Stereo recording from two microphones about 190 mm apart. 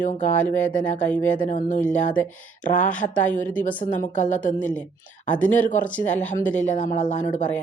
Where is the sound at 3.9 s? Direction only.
45° left (ahead or behind).